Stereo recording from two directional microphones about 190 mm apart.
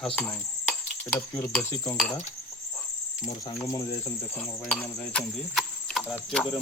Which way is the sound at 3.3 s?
25° left (ahead or behind).